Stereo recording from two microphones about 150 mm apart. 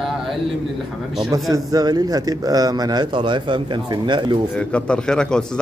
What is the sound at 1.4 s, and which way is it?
A man's voice, 25° right (ahead or behind).